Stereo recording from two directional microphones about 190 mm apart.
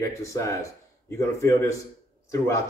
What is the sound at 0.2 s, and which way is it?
Speech, 15° left (ahead or behind).